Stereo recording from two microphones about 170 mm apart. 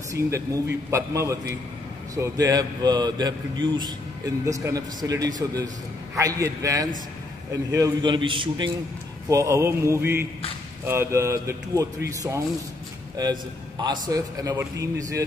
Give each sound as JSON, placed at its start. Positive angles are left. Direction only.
{"t": 0.5, "sound": "a man's voice", "side_deg": -20}
{"t": 9.3, "sound": "a man's voice", "side_deg": -20}